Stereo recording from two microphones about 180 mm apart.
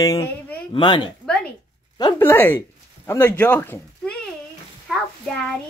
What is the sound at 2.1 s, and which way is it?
Speech, 10° left (ahead or behind).